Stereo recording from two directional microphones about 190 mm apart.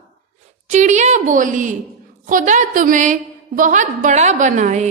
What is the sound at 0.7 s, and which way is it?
A woman's voice, 40° right (ahead or behind).